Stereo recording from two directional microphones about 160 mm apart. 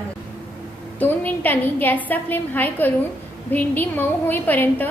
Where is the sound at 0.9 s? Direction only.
10° left (ahead or behind).